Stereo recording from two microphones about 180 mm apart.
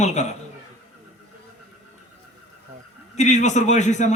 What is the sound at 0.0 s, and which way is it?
Speech, 40° left (ahead or behind).